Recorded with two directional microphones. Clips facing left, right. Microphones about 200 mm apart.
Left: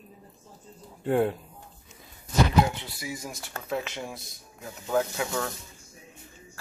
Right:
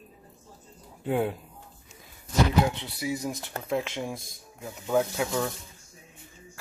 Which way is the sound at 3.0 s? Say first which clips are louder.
Right 7 dB; 15° right (ahead or behind).